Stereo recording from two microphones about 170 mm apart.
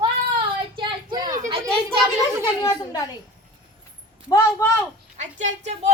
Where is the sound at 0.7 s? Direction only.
25° right (ahead or behind).